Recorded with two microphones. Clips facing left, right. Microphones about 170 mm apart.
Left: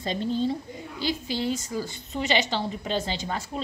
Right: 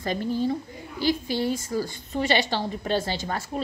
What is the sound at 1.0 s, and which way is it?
Speech, 50° right (ahead or behind).